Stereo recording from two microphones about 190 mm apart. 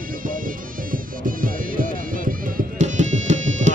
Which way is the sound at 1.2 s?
45° right (ahead or behind).